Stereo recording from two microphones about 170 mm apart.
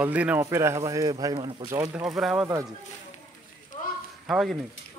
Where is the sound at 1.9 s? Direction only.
5° right (ahead or behind).